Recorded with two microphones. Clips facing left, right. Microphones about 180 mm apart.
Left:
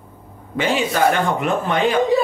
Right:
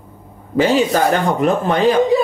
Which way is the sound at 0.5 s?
35° right (ahead or behind).